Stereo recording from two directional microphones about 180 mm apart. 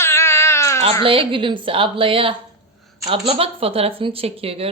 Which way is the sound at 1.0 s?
30° right (ahead or behind).